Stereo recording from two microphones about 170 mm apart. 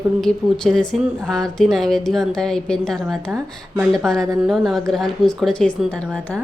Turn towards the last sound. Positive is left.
turn(degrees=5)  # may be behind; listen again after turning